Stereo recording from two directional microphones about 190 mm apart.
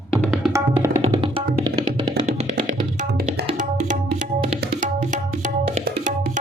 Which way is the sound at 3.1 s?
55° right (ahead or behind).